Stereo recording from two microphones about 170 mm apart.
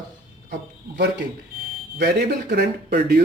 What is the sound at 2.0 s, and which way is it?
Speech, 70° right (ahead or behind).